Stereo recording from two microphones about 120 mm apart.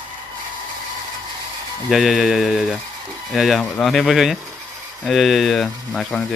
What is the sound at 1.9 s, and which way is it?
Speech, 5° right (ahead or behind).